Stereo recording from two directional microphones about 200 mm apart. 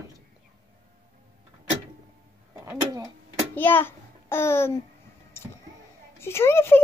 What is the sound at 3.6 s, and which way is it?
A child's voice, 10° left (ahead or behind).